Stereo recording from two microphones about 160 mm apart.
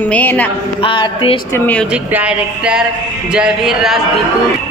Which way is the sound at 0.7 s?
30° left (ahead or behind).